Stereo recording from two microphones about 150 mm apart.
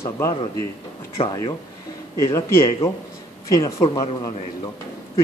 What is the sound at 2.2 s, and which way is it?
Speech, 20° left (ahead or behind).